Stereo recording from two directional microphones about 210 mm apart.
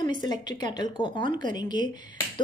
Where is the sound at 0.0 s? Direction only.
20° left (ahead or behind).